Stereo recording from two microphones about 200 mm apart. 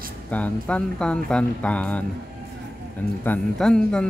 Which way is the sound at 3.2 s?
5° left (ahead or behind).